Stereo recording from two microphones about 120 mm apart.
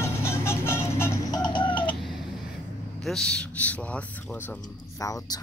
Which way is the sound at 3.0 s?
5° left (ahead or behind).